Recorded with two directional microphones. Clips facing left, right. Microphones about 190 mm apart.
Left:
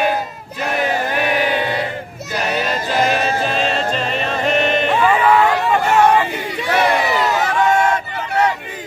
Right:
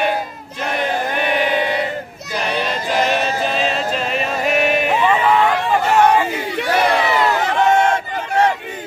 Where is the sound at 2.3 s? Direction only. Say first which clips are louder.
Left 1 dB; centre (ahead or behind).